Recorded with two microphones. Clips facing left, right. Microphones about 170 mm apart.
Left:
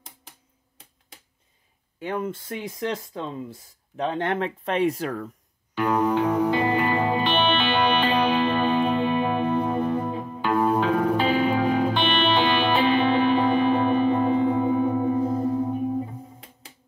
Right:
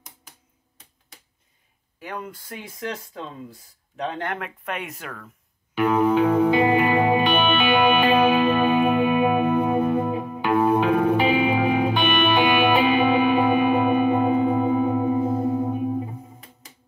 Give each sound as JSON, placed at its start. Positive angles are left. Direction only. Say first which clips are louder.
{"t": 2.0, "sound": "speech", "louder": "left 6 dB", "side_deg": 25}
{"t": 5.8, "sound": "music", "louder": "right 3 dB", "side_deg": -15}